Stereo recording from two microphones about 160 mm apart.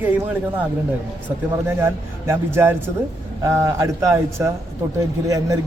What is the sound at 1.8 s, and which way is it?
A man's voice, 15° right (ahead or behind).